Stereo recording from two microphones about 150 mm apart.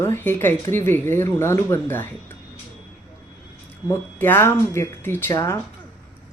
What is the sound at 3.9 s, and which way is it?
Speech, 15° left (ahead or behind).